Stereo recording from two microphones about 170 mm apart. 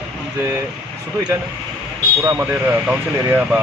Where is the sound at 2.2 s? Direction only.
15° right (ahead or behind).